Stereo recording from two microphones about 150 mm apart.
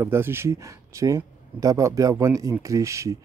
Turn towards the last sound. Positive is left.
turn(degrees=-20)  # may be behind; listen again after turning